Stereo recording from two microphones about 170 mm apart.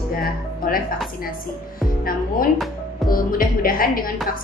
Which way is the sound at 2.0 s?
55° left (ahead or behind).